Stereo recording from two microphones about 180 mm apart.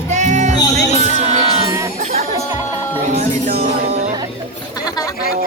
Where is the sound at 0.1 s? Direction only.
40° right (ahead or behind).